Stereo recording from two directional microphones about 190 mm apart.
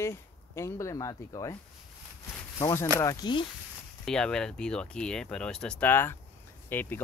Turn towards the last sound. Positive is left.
turn(degrees=10)  # may be behind; listen again after turning